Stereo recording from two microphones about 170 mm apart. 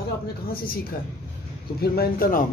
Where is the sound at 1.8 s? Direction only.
65° left (ahead or behind).